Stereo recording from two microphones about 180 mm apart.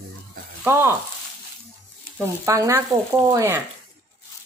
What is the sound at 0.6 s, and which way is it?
Speech, 15° right (ahead or behind).